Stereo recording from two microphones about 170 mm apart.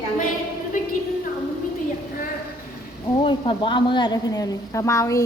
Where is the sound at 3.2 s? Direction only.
30° left (ahead or behind).